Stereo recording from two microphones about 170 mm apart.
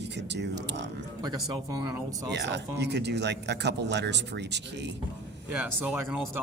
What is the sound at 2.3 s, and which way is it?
Speech, 90° right.